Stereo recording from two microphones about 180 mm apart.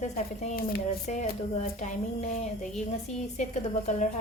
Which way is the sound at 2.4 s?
40° left (ahead or behind).